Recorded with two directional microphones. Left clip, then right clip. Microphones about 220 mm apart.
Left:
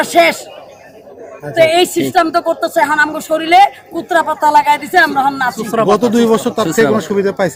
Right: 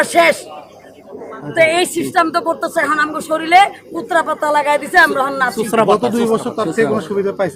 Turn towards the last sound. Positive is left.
turn(degrees=45)  # may be behind; listen again after turning